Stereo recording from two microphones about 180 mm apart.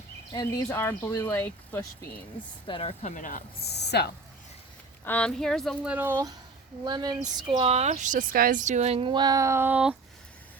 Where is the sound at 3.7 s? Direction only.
65° left (ahead or behind).